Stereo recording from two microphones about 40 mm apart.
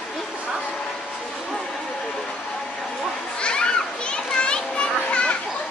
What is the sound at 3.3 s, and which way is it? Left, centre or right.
Children playing, left.